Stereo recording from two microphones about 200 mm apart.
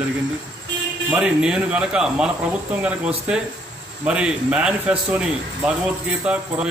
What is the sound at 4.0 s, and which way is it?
Speech, 5° right (ahead or behind).